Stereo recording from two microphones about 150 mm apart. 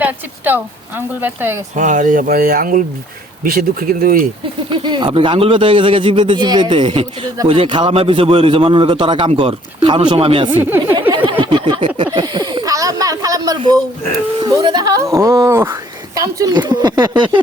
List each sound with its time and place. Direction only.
0.0 s speech: 10° right (ahead or behind)
1.7 s speech: 55° right (ahead or behind)
4.7 s a man's voice: 30° right (ahead or behind)
10.6 s speech: 15° right (ahead or behind)
11.3 s a sound: 35° right (ahead or behind)
14.3 s speech: 30° right (ahead or behind)